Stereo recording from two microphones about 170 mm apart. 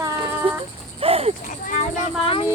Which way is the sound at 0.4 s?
35° right (ahead or behind).